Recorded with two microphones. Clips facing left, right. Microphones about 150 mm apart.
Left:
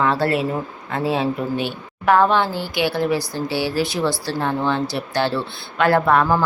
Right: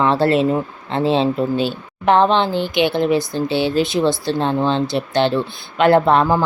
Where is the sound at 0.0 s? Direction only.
25° right (ahead or behind).